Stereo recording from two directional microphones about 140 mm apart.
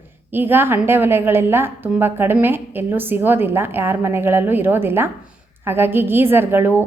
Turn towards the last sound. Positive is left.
turn(degrees=-15)  # may be behind; listen again after turning